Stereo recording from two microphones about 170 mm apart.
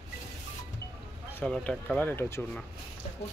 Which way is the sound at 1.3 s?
5° left (ahead or behind).